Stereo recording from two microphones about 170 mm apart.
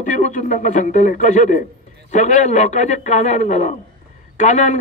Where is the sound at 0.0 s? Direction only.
45° left (ahead or behind).